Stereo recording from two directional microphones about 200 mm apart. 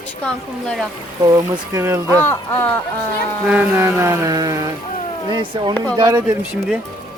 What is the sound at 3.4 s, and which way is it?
Mantra, 5° right (ahead or behind).